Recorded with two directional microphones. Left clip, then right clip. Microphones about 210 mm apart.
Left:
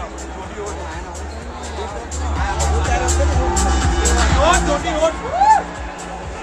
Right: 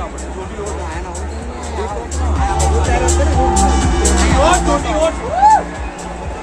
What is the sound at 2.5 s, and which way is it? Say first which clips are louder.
Music: right 4 dB; 25° right (ahead or behind).